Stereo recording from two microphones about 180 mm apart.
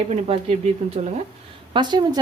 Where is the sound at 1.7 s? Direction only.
25° right (ahead or behind).